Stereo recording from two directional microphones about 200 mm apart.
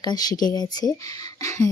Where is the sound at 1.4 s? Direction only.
15° left (ahead or behind).